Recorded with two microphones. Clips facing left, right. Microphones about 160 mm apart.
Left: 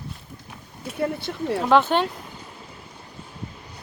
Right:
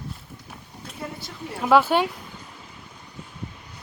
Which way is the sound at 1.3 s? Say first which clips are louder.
Left 10 dB; 65° left (ahead or behind).